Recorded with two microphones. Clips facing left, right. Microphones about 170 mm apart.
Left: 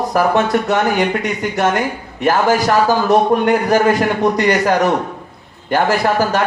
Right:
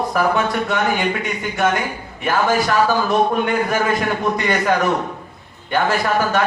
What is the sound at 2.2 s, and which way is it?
A man's voice, 40° left (ahead or behind).